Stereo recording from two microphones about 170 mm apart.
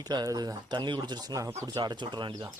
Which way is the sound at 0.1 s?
25° right (ahead or behind).